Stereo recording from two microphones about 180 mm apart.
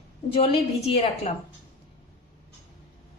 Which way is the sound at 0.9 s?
25° left (ahead or behind).